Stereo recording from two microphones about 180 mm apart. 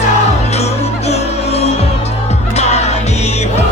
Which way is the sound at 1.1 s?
35° left (ahead or behind).